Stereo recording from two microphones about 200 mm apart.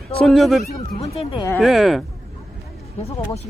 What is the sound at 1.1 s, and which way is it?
Speech, 25° left (ahead or behind).